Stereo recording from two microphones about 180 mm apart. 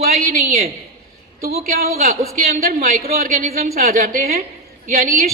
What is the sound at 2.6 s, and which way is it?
A woman's voice, 55° right (ahead or behind).